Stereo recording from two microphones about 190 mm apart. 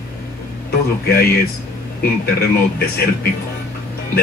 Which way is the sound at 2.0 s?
55° left (ahead or behind).